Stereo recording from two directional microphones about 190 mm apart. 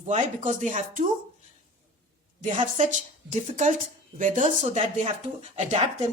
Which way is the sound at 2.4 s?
40° right (ahead or behind).